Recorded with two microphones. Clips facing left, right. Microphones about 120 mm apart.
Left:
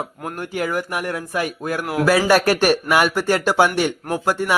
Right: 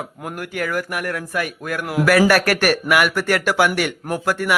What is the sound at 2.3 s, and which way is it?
Speech, 20° left (ahead or behind).